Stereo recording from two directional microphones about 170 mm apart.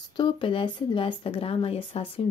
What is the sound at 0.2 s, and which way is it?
A woman's voice, 30° left (ahead or behind).